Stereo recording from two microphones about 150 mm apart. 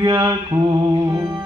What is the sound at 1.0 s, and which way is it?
Speech, 20° right (ahead or behind).